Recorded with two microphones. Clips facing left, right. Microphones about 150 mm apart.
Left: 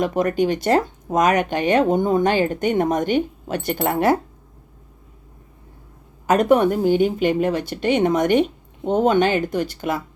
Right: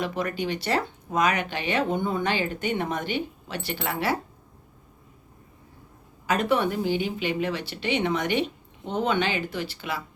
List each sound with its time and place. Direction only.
0.0 s speech: 45° left (ahead or behind)
6.2 s speech: 45° left (ahead or behind)